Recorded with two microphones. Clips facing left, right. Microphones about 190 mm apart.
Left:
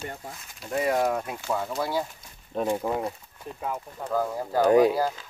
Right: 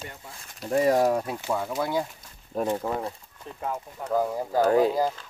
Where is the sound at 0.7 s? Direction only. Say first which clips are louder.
Right 3 dB; 35° right (ahead or behind).